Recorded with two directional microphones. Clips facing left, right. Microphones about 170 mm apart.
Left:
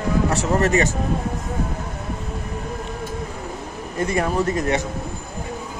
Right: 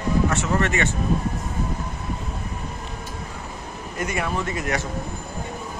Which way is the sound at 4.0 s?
35° left (ahead or behind).